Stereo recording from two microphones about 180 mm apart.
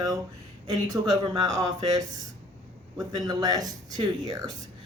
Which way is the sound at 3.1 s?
20° right (ahead or behind).